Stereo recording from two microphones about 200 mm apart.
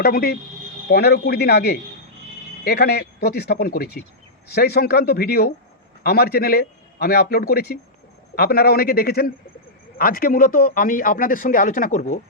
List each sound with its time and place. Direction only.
0.0 s speech: 50° left (ahead or behind)